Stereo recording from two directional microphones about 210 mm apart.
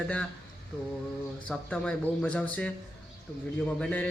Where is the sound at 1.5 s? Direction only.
5° left (ahead or behind).